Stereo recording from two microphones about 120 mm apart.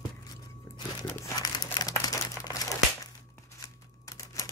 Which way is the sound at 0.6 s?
30° left (ahead or behind).